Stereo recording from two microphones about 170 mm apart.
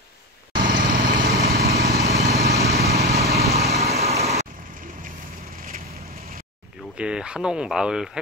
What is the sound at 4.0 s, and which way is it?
Vehicle, 40° right (ahead or behind).